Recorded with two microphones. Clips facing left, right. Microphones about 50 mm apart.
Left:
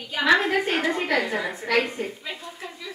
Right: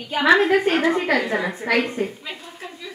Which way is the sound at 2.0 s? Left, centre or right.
Centre.